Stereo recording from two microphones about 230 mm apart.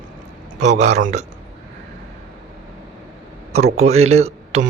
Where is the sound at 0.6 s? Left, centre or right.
Right.